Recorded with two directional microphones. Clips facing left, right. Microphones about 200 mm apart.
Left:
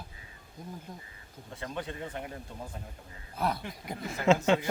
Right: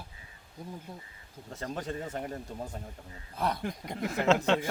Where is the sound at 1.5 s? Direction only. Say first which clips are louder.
Right 2 dB; 40° right (ahead or behind).